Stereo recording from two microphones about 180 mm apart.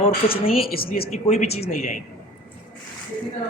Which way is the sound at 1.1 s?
35° left (ahead or behind).